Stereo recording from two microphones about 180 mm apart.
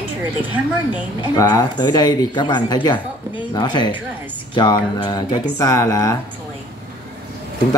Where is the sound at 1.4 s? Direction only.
20° left (ahead or behind).